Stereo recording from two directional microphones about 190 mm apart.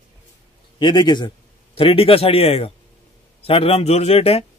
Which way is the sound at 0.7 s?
20° left (ahead or behind).